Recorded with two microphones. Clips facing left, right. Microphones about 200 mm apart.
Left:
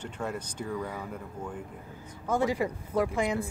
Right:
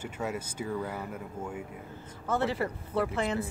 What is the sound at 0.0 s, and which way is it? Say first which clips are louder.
Speech: even; 5° right (ahead or behind).